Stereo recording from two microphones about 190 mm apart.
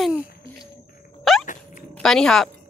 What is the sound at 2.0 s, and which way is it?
Speech, 5° left (ahead or behind).